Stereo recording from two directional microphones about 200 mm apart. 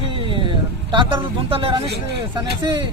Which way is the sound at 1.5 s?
25° right (ahead or behind).